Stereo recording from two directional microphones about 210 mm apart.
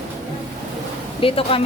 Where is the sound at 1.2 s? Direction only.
25° left (ahead or behind).